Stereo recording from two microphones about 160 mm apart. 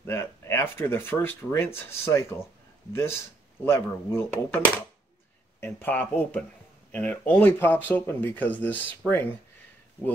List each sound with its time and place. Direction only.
0.0 s speech: 15° left (ahead or behind)